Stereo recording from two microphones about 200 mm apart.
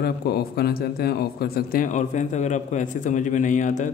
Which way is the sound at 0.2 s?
50° left (ahead or behind).